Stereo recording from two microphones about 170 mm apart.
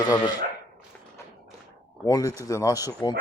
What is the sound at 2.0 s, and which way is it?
Speech, 20° left (ahead or behind).